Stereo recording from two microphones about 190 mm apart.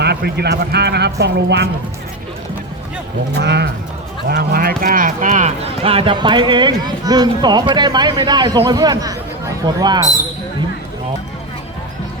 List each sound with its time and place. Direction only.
0.0 s speech: 60° right (ahead or behind)
3.4 s speech: 60° right (ahead or behind); by 10.1 s 20° right (ahead or behind)